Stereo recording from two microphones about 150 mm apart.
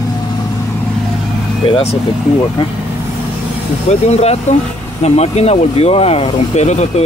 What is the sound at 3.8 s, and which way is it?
Speech, 45° left (ahead or behind).